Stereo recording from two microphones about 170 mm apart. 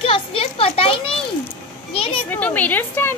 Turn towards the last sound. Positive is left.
turn(degrees=10)  # may be behind; listen again after turning